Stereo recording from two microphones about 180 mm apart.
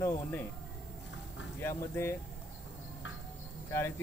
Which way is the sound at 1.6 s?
15° left (ahead or behind).